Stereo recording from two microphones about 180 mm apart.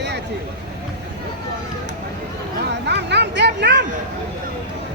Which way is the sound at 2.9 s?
70° right (ahead or behind).